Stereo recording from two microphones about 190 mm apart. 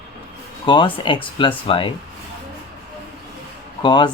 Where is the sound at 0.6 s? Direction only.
25° left (ahead or behind).